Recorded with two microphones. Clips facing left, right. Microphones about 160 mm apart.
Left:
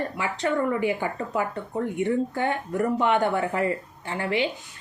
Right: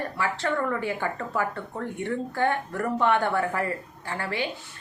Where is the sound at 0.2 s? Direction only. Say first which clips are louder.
Left 1 dB; 15° left (ahead or behind).